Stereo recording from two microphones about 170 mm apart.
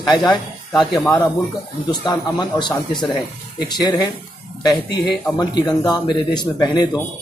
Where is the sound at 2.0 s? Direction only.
25° left (ahead or behind).